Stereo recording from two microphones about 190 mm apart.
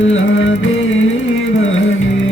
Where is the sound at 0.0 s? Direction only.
90° left.